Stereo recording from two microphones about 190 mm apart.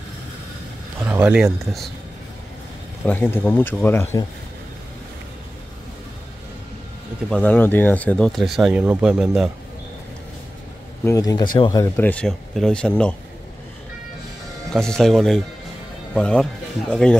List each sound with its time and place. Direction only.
1.0 s speech: 5° right (ahead or behind)
3.1 s speech: 10° left (ahead or behind)
7.2 s speech: 5° left (ahead or behind)
11.1 s speech: 20° left (ahead or behind)
14.7 s speech: 5° left (ahead or behind)